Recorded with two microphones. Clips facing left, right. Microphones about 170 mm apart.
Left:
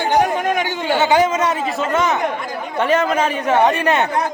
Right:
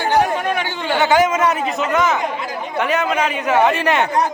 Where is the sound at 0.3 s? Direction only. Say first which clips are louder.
Left 2 dB; 45° left (ahead or behind).